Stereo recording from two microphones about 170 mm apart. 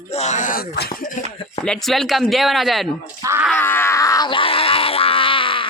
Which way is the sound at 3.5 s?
10° left (ahead or behind).